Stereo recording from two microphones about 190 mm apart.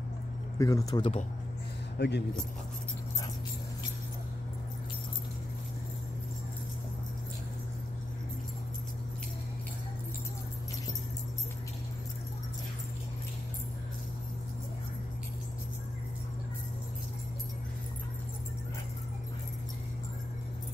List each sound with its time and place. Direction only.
0.6 s speech: 15° left (ahead or behind)
2.0 s speech: 60° left (ahead or behind)